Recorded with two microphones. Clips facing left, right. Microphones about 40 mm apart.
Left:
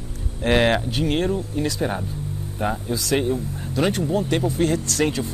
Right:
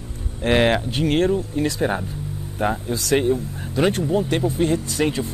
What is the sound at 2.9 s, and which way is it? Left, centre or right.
Speech, right.